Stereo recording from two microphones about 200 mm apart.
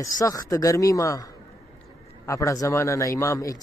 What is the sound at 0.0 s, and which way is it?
Speech, 15° left (ahead or behind).